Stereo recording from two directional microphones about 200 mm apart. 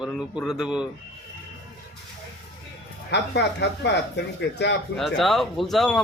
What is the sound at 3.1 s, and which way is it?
Speech, 60° left (ahead or behind).